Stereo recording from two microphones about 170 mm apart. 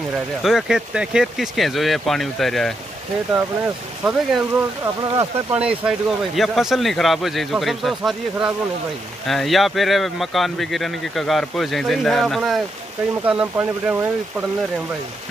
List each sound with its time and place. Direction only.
0.4 s speech: centre (ahead or behind)
3.3 s speech: 10° right (ahead or behind)
5.1 s speech: 20° right (ahead or behind)
5.6 s speech: 5° right (ahead or behind)